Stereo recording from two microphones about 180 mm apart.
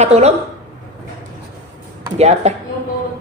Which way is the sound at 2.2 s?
35° right (ahead or behind).